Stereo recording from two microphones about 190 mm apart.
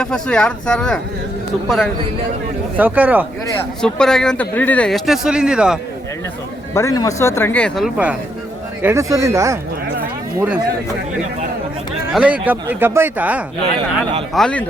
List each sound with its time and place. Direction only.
0.0 s speech: 5° left (ahead or behind)
2.7 s a man's voice: 10° right (ahead or behind)
3.8 s speech: 5° left (ahead or behind)
6.7 s a man's voice: 15° left (ahead or behind); by 9.6 s 15° right (ahead or behind)
12.0 s a man's voice: 5° right (ahead or behind)
14.3 s speech: 5° left (ahead or behind)